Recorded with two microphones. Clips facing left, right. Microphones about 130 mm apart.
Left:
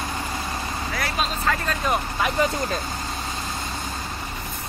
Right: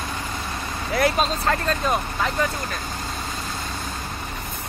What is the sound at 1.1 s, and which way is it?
Speech, 35° right (ahead or behind).